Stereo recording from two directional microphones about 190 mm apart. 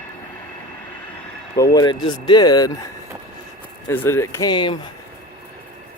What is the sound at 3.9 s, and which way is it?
Speech, 10° left (ahead or behind).